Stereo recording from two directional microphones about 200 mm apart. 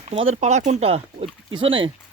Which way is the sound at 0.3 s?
35° right (ahead or behind).